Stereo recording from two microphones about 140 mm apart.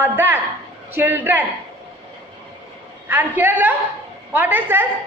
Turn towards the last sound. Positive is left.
turn(degrees=-15)  # may be behind; listen again after turning